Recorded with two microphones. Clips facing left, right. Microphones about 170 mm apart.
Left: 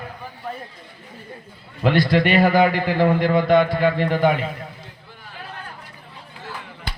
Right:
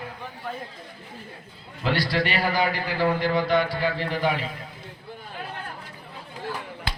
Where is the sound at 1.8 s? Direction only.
50° left (ahead or behind).